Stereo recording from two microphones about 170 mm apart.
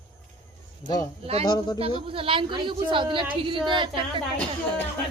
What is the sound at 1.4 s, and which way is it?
Speech, 25° left (ahead or behind).